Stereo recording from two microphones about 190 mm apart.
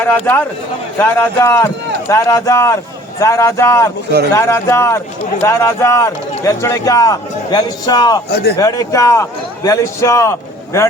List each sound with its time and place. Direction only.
0.0 s a man's voice: 10° left (ahead or behind)
8.3 s a man's voice: 55° left (ahead or behind)
8.5 s a man's voice: 20° left (ahead or behind)